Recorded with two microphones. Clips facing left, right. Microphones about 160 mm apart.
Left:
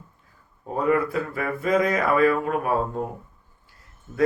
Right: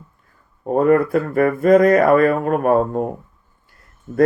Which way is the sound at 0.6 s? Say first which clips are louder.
Right 8 dB; 50° right (ahead or behind).